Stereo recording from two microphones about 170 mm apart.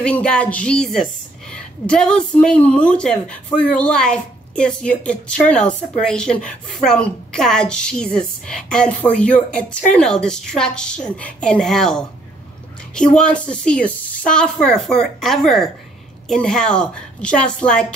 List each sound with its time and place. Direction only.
0.0 s a woman's voice: 5° left (ahead or behind)